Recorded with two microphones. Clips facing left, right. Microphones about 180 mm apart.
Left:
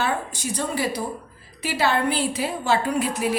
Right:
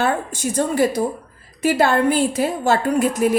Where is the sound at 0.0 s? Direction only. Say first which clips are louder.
Right 5 dB; 50° right (ahead or behind).